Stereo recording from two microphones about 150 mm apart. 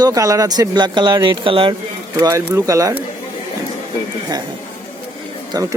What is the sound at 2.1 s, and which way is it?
Speech, 20° right (ahead or behind).